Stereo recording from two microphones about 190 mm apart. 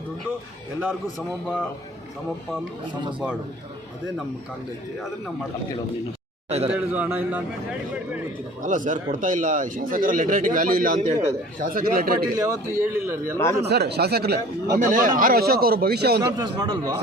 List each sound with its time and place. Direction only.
6.7 s a man's voice: 10° right (ahead or behind)
8.6 s speech: 45° right (ahead or behind)
12.4 s a man's voice: 15° right (ahead or behind)
13.3 s speech: 10° left (ahead or behind)
13.7 s speech: 60° right (ahead or behind)
16.2 s a man's voice: 20° right (ahead or behind)